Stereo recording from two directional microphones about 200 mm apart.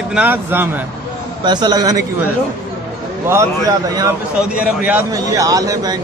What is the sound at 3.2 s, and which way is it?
Speech, 15° right (ahead or behind).